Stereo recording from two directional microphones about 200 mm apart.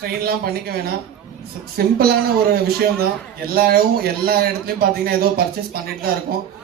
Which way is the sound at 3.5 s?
50° right (ahead or behind).